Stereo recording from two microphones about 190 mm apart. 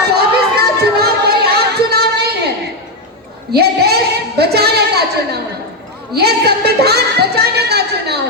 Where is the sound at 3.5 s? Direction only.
55° right (ahead or behind).